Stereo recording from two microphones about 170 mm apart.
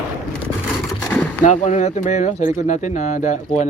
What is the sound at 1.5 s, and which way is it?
Speech, 45° left (ahead or behind).